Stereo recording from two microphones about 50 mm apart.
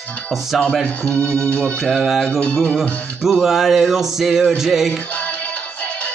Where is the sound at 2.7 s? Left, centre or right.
Centre.